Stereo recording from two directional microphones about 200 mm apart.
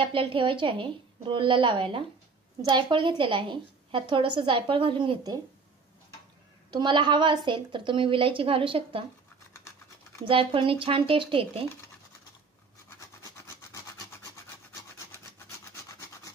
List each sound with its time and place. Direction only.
0.0 s a woman's voice: 25° right (ahead or behind)
6.7 s a woman's voice: 20° right (ahead or behind)
10.2 s a woman's voice: 25° right (ahead or behind)
13.5 s wood: 15° left (ahead or behind)